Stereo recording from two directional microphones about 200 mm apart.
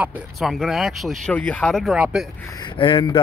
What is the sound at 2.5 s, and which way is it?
Speech, 25° left (ahead or behind).